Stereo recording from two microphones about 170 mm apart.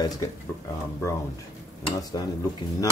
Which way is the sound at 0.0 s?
20° left (ahead or behind).